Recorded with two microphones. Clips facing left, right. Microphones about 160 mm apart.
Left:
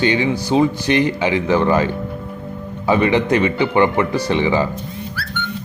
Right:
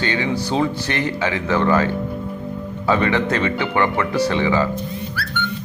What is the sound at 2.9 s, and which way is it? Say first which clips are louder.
Speech: left 3 dB; 15° left (ahead or behind).